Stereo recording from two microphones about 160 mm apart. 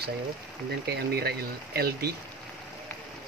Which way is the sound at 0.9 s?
85° right.